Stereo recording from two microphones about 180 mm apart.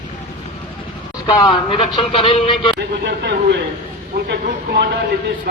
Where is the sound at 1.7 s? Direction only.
30° left (ahead or behind).